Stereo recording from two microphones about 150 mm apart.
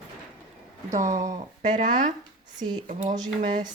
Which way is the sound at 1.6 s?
55° right (ahead or behind).